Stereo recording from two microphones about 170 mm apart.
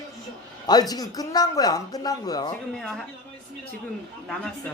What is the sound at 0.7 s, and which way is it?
Speech, 25° left (ahead or behind).